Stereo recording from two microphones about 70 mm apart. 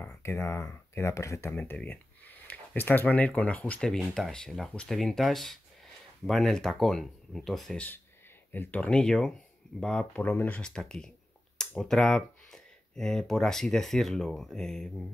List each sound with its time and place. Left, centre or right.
0.2 s speech: left
1.5 s speech: centre
3.9 s speech: centre
8.5 s speech: left; by 10.0 s centre
10.2 s speech: left
10.6 s speech: centre